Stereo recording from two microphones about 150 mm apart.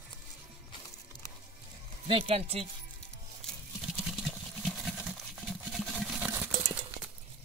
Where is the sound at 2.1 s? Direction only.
40° right (ahead or behind).